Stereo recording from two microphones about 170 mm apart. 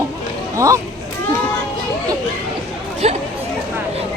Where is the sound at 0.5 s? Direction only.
20° right (ahead or behind).